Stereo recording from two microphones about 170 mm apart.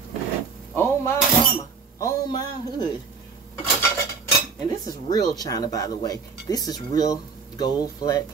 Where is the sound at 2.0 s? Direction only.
20° left (ahead or behind).